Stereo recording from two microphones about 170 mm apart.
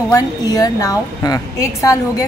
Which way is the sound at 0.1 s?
20° left (ahead or behind).